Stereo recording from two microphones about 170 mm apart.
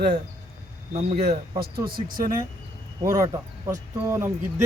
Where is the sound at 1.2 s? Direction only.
65° right (ahead or behind).